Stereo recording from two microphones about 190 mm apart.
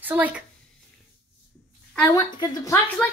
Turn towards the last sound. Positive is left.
turn(degrees=15)  # may be behind; listen again after turning